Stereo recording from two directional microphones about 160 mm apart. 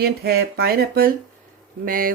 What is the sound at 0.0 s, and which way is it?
Speech, 75° right (ahead or behind).